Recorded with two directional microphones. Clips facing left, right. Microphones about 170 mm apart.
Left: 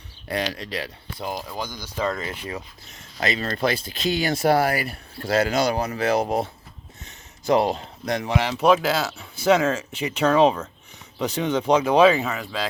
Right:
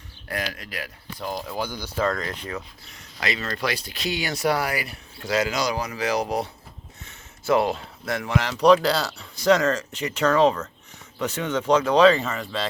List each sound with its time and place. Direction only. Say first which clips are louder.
0.3 s speech: left 4 dB; 25° left (ahead or behind)
1.5 s speech: right 2 dB; 10° right (ahead or behind)
2.0 s speech: left 2 dB; 5° left (ahead or behind)
3.2 s speech: left 3 dB; 35° left (ahead or behind)
4.1 s speech: left 4 dB; 50° left (ahead or behind)
5.7 s speech: left 3 dB; 30° left (ahead or behind)
6.0 s speech: left 3 dB; 55° left (ahead or behind)
7.4 s speech: left 1 dB; 20° left (ahead or behind)
8.6 s speech: right 2 dB; 5° left (ahead or behind)